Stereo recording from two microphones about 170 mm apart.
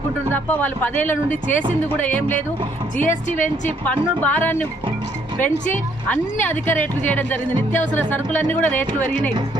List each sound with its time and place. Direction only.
0.3 s speech: 10° left (ahead or behind)
3.0 s a woman's voice: 50° left (ahead or behind)
4.2 s speech: 10° left (ahead or behind)